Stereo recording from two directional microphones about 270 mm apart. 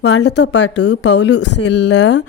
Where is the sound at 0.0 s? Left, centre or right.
Left.